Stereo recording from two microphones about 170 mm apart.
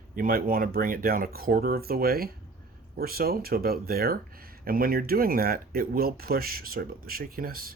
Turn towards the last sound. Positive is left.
turn(degrees=-60)  # may be behind; listen again after turning